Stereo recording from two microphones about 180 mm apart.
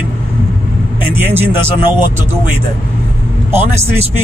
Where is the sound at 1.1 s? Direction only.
10° right (ahead or behind).